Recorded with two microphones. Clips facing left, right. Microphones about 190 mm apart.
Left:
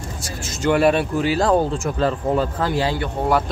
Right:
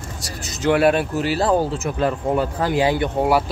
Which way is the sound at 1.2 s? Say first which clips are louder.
Left 2 dB; 40° right (ahead or behind).